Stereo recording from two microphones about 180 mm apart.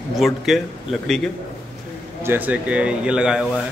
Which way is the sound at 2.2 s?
10° right (ahead or behind).